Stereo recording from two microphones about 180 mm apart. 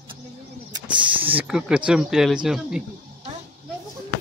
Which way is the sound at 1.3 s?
5° right (ahead or behind).